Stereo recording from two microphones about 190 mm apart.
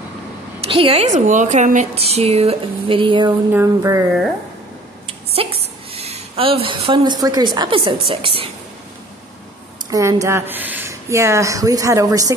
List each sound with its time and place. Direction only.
0.7 s speech: 30° right (ahead or behind)
3.5 s a woman's voice: 15° right (ahead or behind)
5.0 s a woman's voice: 30° right (ahead or behind)
9.8 s a woman's voice: 15° right (ahead or behind)